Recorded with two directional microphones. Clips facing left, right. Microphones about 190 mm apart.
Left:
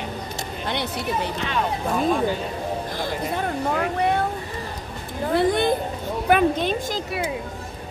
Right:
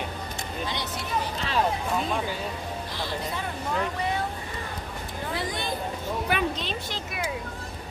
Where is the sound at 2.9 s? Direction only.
50° left (ahead or behind).